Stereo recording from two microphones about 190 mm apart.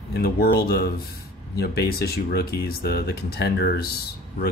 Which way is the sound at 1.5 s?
55° left (ahead or behind).